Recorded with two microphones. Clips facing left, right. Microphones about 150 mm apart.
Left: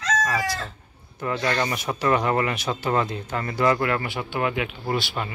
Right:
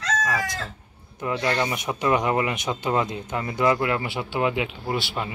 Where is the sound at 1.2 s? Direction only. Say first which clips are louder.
Even; 15° right (ahead or behind).